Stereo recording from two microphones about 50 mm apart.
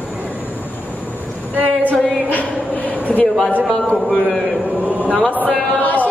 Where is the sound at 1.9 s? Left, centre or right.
Left.